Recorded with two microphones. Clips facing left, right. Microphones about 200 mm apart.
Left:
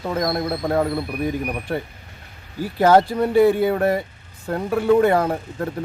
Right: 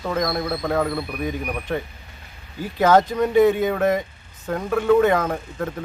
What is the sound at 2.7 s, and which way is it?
Speech, 10° left (ahead or behind).